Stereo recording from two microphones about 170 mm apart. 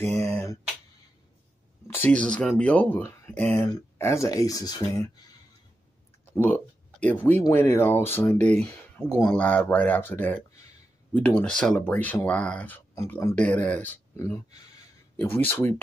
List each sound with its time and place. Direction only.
0.2 s speech: 15° left (ahead or behind)
2.0 s speech: 5° left (ahead or behind)
6.3 s speech: 10° left (ahead or behind)